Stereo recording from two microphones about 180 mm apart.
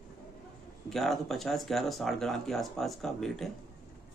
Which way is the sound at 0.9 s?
Centre (ahead or behind).